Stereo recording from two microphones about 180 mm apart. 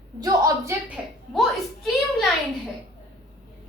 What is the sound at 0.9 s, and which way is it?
A child's voice, centre (ahead or behind).